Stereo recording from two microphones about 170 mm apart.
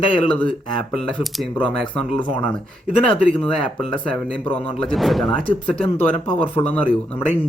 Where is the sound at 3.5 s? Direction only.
30° left (ahead or behind).